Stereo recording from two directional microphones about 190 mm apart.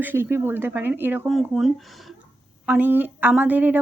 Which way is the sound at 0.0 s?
10° right (ahead or behind).